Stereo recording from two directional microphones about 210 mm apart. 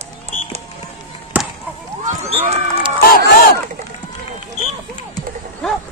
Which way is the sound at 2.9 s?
45° left (ahead or behind).